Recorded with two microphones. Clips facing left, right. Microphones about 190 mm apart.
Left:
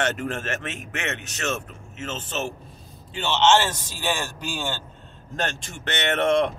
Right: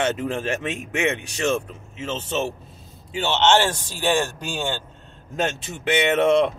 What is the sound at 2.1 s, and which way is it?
Speech, 25° right (ahead or behind).